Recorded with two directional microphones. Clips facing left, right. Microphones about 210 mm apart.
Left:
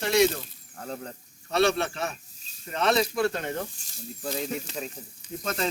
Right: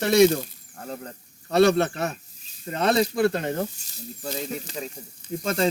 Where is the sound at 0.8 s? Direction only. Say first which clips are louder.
Right 1 dB; 5° right (ahead or behind).